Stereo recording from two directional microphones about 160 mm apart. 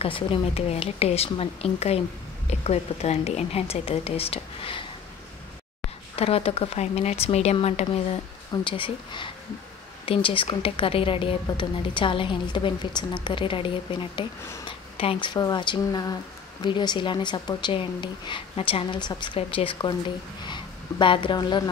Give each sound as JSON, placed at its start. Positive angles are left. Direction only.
{"t": 0.0, "sound": "a woman's voice", "side_deg": 35}
{"t": 6.1, "sound": "a woman's voice", "side_deg": 40}